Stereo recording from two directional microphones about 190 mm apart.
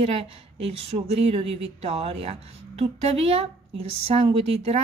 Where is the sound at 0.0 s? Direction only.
30° right (ahead or behind).